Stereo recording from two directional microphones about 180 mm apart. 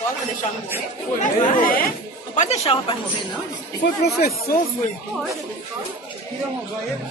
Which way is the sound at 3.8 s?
60° left (ahead or behind).